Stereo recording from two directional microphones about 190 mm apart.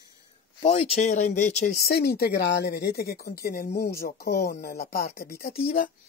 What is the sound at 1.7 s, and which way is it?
Speech, 55° left (ahead or behind).